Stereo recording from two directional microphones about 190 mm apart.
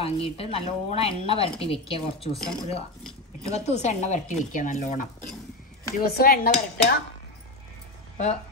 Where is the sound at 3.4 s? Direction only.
35° left (ahead or behind).